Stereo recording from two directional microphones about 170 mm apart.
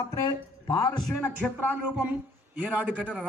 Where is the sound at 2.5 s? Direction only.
10° right (ahead or behind).